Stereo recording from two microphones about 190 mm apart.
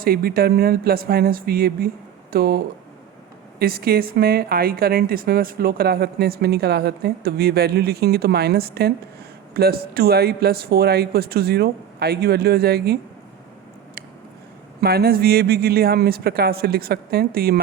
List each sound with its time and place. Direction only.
0.0 s speech: 55° right (ahead or behind)
3.6 s speech: 55° right (ahead or behind)
14.8 s speech: 55° right (ahead or behind)